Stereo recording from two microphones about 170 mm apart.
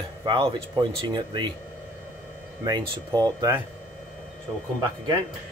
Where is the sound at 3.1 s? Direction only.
25° right (ahead or behind).